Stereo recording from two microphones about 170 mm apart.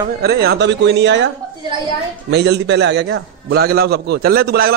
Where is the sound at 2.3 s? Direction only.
80° right.